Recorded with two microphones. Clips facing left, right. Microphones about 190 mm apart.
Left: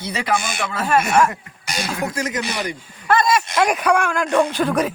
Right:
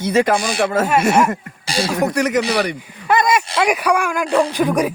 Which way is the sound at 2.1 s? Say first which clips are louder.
Right 7 dB; 70° right (ahead or behind).